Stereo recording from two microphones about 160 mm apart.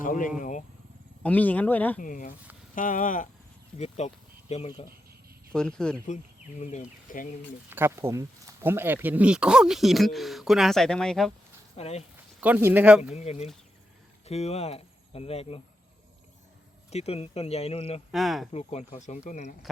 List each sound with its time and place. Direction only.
0.0 s speech: 55° left (ahead or behind)
1.2 s speech: 10° left (ahead or behind)
2.0 s speech: 55° left (ahead or behind)
3.8 s speech: 45° left (ahead or behind)
5.5 s speech: 5° left (ahead or behind)
6.6 s speech: 45° left (ahead or behind)
7.1 s speech: 60° left (ahead or behind)
7.7 s speech: 15° right (ahead or behind); by 11.3 s 5° left (ahead or behind)
11.8 s speech: 40° left (ahead or behind)
12.4 s speech: 10° right (ahead or behind)
13.1 s speech: 45° left (ahead or behind)
16.9 s speech: 40° left (ahead or behind)
18.1 s speech: centre (ahead or behind)
18.5 s speech: 40° left (ahead or behind)